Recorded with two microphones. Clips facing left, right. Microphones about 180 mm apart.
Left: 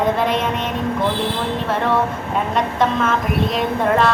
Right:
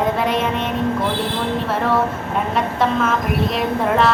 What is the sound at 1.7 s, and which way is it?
A woman's voice, centre (ahead or behind).